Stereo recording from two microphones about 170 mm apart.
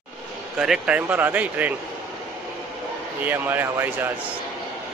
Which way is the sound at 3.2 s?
10° right (ahead or behind).